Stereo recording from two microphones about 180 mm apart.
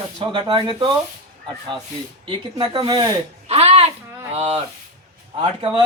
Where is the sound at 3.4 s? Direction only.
35° right (ahead or behind).